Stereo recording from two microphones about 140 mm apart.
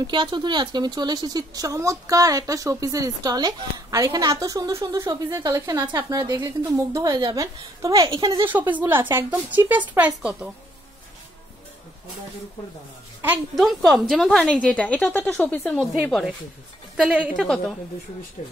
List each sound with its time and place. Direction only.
0.0 s speech: 35° right (ahead or behind); by 10.5 s 10° right (ahead or behind)
13.6 s a woman's voice: centre (ahead or behind)
15.8 s a woman's voice: 5° right (ahead or behind)